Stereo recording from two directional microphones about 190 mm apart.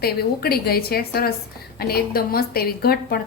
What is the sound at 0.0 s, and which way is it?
A woman's voice, 55° left (ahead or behind).